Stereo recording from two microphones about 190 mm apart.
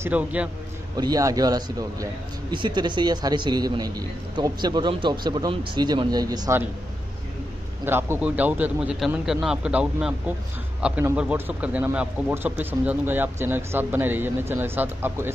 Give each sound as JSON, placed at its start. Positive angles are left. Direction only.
{"t": 0.0, "sound": "a man's voice", "side_deg": -5}
{"t": 0.9, "sound": "a man's voice", "side_deg": -20}
{"t": 7.8, "sound": "a man's voice", "side_deg": -10}